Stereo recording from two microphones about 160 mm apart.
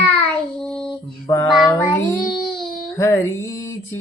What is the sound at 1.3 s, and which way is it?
Child singing, 20° left (ahead or behind).